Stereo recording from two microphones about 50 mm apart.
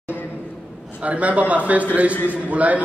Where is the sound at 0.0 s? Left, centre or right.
Left.